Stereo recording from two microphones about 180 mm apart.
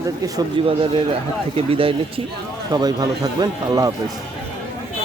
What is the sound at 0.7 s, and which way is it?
A man's voice, 30° right (ahead or behind).